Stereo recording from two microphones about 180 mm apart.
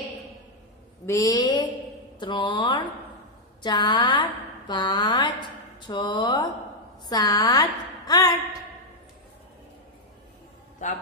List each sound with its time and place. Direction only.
1.0 s a woman's voice: 15° left (ahead or behind)